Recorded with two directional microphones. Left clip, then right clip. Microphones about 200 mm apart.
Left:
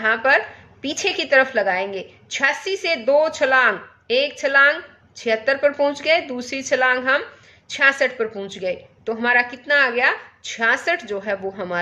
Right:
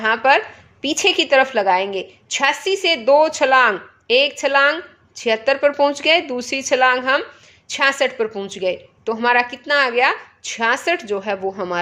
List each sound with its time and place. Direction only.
0.0 s a woman's voice: 30° right (ahead or behind)